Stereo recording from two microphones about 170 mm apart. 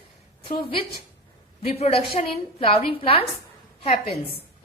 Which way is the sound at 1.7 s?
35° left (ahead or behind).